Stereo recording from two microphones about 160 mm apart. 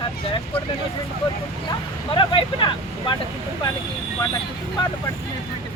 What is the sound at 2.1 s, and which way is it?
Speech, 30° left (ahead or behind).